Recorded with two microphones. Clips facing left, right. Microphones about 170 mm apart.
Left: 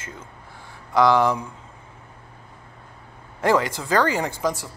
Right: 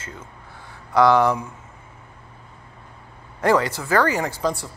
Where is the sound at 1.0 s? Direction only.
10° left (ahead or behind).